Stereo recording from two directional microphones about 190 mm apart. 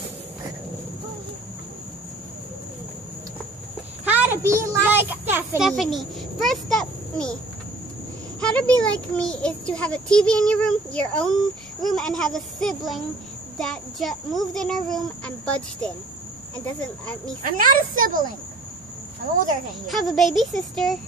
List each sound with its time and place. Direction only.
4.0 s a sound: 10° right (ahead or behind)
4.5 s child singing: 15° right (ahead or behind)
5.7 s a child's voice: centre (ahead or behind)
8.4 s a child's voice: 5° left (ahead or behind)
17.4 s speech: 45° right (ahead or behind)
19.9 s a child's voice: centre (ahead or behind)